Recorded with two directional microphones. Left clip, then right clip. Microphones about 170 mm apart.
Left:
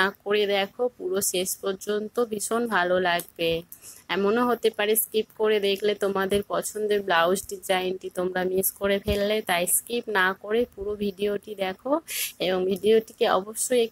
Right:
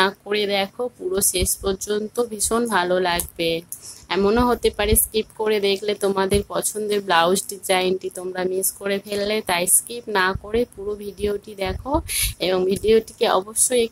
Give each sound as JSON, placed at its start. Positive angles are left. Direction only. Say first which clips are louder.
{"t": 0.0, "sound": "speech", "louder": "right 3 dB", "side_deg": 20}